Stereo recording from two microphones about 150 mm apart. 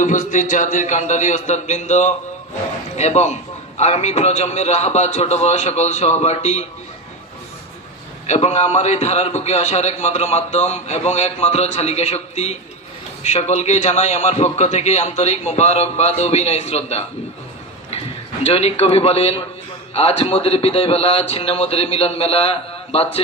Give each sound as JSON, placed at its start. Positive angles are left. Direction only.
{"t": 0.0, "sound": "a man's voice", "side_deg": 55}
{"t": 8.3, "sound": "a man's voice", "side_deg": 45}
{"t": 18.4, "sound": "a man's voice", "side_deg": 40}